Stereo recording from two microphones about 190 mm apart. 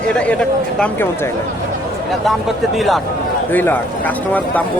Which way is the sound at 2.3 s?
Centre (ahead or behind).